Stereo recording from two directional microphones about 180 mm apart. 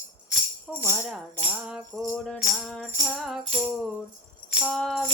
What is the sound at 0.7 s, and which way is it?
Speech, centre (ahead or behind).